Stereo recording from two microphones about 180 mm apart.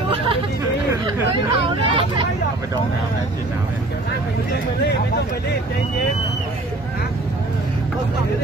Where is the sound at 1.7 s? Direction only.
25° right (ahead or behind).